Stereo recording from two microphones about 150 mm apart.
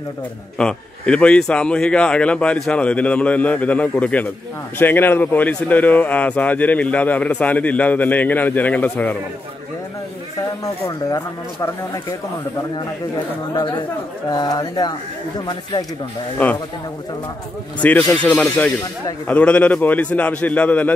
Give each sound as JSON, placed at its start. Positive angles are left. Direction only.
{"t": 0.6, "sound": "speech", "side_deg": 5}
{"t": 10.6, "sound": "speech", "side_deg": 25}
{"t": 13.6, "sound": "speech", "side_deg": 30}
{"t": 16.4, "sound": "speech", "side_deg": 10}
{"t": 17.8, "sound": "speech", "side_deg": 10}